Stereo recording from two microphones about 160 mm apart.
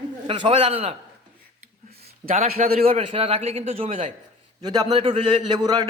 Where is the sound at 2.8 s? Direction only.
40° right (ahead or behind).